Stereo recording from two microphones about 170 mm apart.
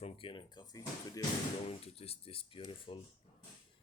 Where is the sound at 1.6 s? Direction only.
35° left (ahead or behind).